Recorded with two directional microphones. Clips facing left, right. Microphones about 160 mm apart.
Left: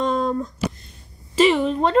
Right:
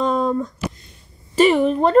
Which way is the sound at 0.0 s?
5° right (ahead or behind).